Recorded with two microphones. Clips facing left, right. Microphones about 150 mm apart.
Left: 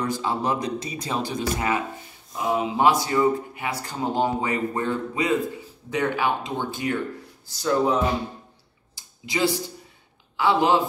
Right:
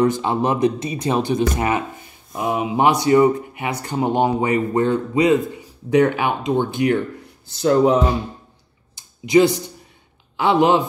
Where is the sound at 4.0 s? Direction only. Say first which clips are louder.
Right 6 dB; 60° right (ahead or behind).